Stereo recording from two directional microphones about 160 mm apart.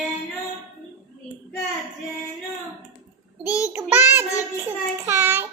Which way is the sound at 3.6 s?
10° right (ahead or behind).